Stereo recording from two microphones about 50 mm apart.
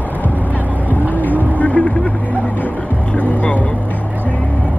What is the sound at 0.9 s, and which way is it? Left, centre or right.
Vehicle, left.